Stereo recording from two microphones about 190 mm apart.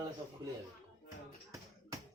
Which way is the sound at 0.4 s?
25° right (ahead or behind).